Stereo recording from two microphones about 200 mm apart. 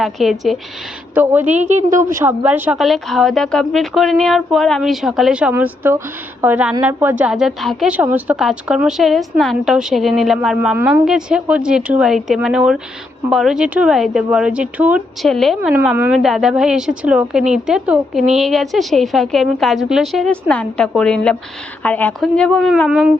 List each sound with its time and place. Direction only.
0.0 s a woman's voice: centre (ahead or behind)
1.1 s a woman's voice: 10° right (ahead or behind)
1.5 s a woman's voice: 35° right (ahead or behind)
2.0 s a woman's voice: 15° right (ahead or behind)